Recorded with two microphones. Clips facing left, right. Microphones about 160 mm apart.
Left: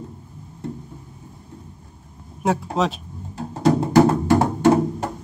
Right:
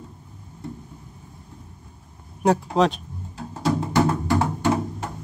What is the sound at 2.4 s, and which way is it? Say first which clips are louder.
Speech: right 2 dB; centre (ahead or behind).